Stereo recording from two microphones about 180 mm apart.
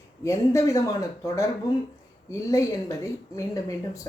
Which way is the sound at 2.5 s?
15° left (ahead or behind).